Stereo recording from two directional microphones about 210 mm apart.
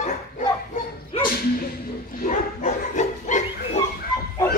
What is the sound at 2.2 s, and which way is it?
Bow-wow, 35° left (ahead or behind).